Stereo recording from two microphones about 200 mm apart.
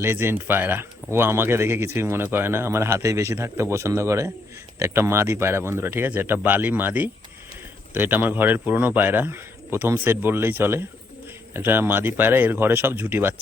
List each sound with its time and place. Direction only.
0.0 s speech: 10° right (ahead or behind)